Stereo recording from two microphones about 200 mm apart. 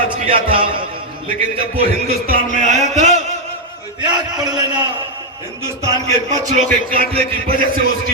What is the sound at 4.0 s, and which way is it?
Speech, 20° right (ahead or behind).